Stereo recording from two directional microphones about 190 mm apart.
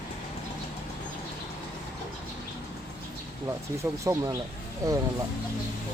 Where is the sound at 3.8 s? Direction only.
15° right (ahead or behind).